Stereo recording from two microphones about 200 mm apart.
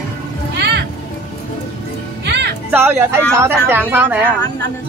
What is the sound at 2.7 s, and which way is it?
Speech, 10° right (ahead or behind).